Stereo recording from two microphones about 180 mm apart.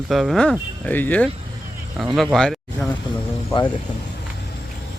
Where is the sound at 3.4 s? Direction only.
25° left (ahead or behind).